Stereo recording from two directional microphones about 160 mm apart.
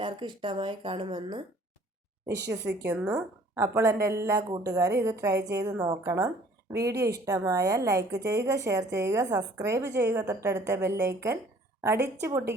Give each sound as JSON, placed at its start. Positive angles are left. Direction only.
{"t": 0.0, "sound": "speech", "side_deg": -30}
{"t": 2.5, "sound": "a woman's voice", "side_deg": -15}